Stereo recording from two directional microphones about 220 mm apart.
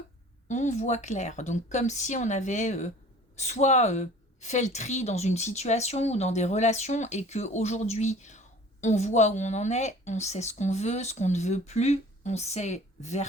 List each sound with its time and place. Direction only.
0.4 s a woman's voice: 30° left (ahead or behind)